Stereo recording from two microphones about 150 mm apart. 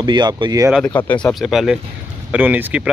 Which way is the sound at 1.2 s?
Centre (ahead or behind).